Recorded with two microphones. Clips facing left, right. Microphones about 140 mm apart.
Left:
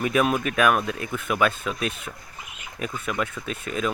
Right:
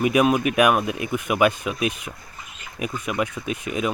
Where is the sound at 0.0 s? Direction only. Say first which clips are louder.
Right 4 dB; 15° right (ahead or behind).